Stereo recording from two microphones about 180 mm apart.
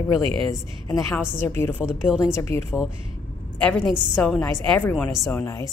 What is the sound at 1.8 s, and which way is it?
Speech, 5° right (ahead or behind).